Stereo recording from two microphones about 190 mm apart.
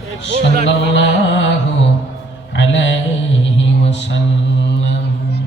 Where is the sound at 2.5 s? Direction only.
75° left (ahead or behind).